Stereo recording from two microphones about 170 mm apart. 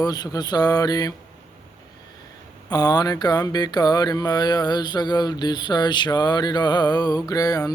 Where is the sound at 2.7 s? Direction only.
25° left (ahead or behind).